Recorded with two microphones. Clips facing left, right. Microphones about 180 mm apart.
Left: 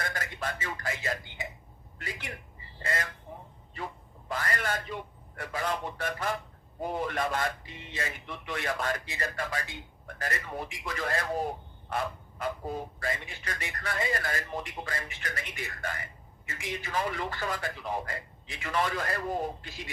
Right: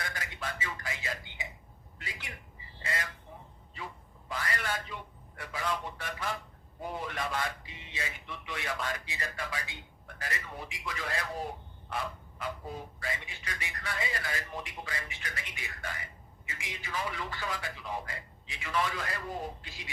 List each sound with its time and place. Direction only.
0.0 s a man's voice: 45° left (ahead or behind)
2.8 s speech: 45° left (ahead or behind)
4.3 s a sound: 50° left (ahead or behind)
5.4 s speech: 45° left (ahead or behind)